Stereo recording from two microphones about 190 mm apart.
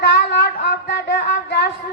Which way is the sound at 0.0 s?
60° left (ahead or behind).